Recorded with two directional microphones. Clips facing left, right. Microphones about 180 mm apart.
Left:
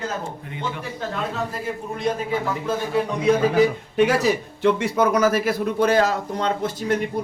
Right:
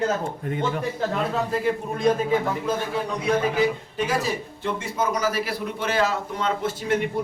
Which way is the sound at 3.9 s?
70° left (ahead or behind).